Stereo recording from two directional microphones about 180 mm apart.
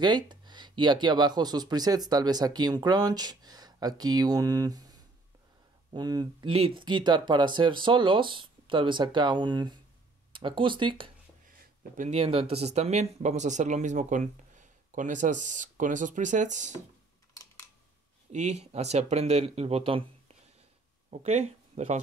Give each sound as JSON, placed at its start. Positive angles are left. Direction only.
{"t": 0.0, "sound": "speech", "side_deg": -25}
{"t": 18.3, "sound": "speech", "side_deg": -40}